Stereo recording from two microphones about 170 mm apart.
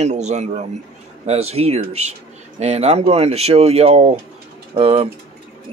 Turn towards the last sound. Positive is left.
turn(degrees=-35)  # may be behind; listen again after turning